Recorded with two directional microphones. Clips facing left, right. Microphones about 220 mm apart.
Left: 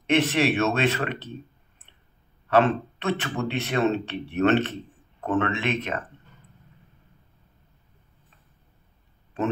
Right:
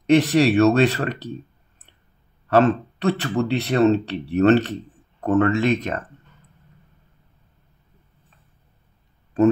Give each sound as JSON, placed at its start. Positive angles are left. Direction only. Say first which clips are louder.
{"t": 0.0, "sound": "speech", "louder": "right 6 dB", "side_deg": -40}
{"t": 2.5, "sound": "speech", "louder": "right 4 dB", "side_deg": -40}